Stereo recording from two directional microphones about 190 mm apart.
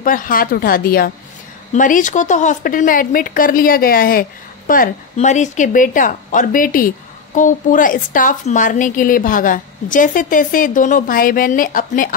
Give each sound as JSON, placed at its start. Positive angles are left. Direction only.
{"t": 0.0, "sound": "speech", "side_deg": 45}